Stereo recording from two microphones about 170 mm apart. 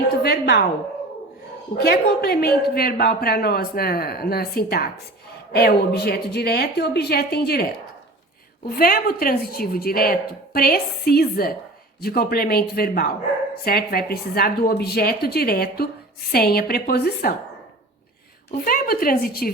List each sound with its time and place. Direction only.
0.2 s a woman's voice: 75° left (ahead or behind)
1.8 s a woman's voice: 70° left (ahead or behind)
8.7 s speech: 60° left (ahead or behind)
18.6 s speech: 60° left (ahead or behind)